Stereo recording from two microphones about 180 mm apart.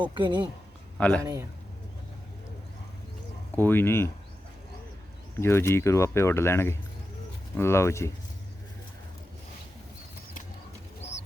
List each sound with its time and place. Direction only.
0.0 s speech: 25° right (ahead or behind)
0.9 s a man's voice: 5° left (ahead or behind)
1.2 s a man's voice: 15° right (ahead or behind)
3.5 s speech: 10° left (ahead or behind)
5.4 s speech: 15° left (ahead or behind)